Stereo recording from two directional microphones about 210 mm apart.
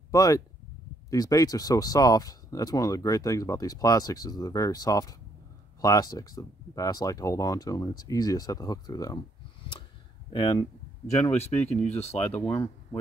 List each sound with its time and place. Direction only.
0.1 s speech: 15° left (ahead or behind)
10.3 s speech: 20° left (ahead or behind)